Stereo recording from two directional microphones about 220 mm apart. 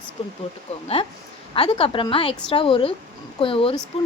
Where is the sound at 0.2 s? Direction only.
25° left (ahead or behind).